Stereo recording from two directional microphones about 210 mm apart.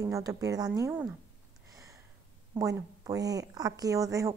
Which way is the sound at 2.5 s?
15° right (ahead or behind).